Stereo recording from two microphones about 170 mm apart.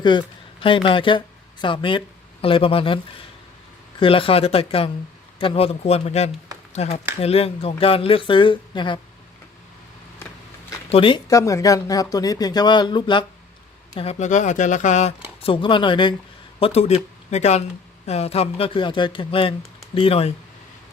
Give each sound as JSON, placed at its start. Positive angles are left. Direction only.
{"t": 0.0, "sound": "speech", "side_deg": 30}
{"t": 4.0, "sound": "speech", "side_deg": 30}
{"t": 10.8, "sound": "speech", "side_deg": 35}
{"t": 15.4, "sound": "speech", "side_deg": 30}